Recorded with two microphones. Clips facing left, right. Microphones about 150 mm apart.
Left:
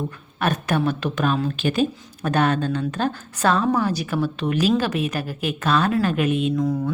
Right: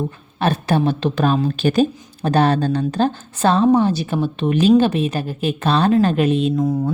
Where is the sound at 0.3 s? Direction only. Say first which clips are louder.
Right 4 dB; 30° right (ahead or behind).